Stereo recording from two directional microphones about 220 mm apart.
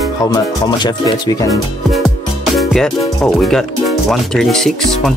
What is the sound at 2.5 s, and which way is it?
Music, centre (ahead or behind).